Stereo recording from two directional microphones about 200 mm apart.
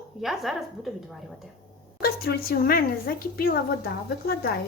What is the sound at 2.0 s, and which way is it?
A woman's voice, 50° left (ahead or behind).